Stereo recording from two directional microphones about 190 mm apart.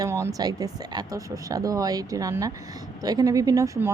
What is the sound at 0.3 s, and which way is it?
A woman's voice, 20° right (ahead or behind).